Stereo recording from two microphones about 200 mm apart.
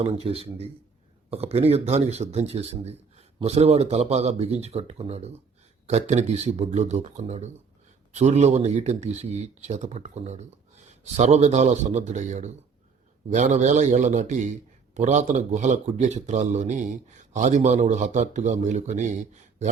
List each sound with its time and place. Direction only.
0.0 s speech: 30° right (ahead or behind)